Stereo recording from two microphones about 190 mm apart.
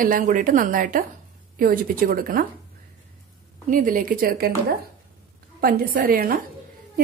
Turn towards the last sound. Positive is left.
turn(degrees=-50)  # may be behind; listen again after turning